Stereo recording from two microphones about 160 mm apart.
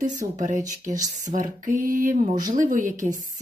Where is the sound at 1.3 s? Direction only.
55° right (ahead or behind).